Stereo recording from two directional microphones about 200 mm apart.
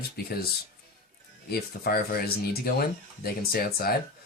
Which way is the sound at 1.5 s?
50° left (ahead or behind).